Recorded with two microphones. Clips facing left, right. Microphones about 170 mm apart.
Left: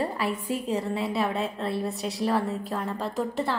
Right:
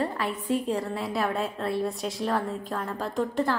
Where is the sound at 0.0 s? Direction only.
10° left (ahead or behind).